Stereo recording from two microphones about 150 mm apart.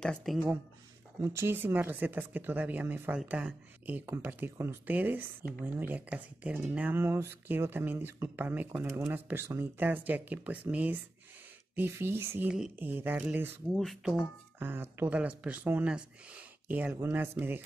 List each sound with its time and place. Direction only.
0.0 s speech: 5° left (ahead or behind)
1.2 s speech: 15° right (ahead or behind)
13.7 s speech: centre (ahead or behind)
14.6 s speech: 15° right (ahead or behind)